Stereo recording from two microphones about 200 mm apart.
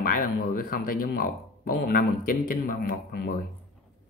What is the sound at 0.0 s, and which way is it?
Speech, 45° left (ahead or behind).